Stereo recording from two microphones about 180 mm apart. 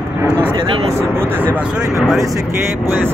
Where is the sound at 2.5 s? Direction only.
10° right (ahead or behind).